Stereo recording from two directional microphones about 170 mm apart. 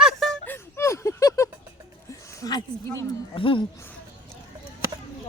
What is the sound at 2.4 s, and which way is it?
Speech, 25° left (ahead or behind).